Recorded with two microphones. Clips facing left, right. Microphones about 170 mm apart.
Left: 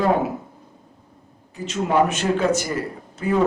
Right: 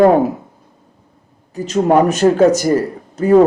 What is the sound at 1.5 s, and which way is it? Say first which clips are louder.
Speech: right 9 dB; 40° right (ahead or behind).